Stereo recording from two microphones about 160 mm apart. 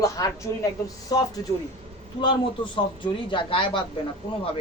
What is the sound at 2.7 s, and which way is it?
A woman's voice, 30° left (ahead or behind).